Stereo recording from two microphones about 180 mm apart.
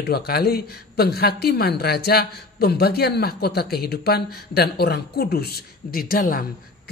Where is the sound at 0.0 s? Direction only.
60° left (ahead or behind).